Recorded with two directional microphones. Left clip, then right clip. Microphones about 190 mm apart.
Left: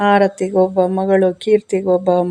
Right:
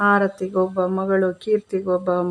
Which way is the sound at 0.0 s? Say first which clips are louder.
Left 5 dB; 10° left (ahead or behind).